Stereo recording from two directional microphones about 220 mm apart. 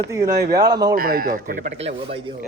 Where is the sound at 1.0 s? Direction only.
40° right (ahead or behind).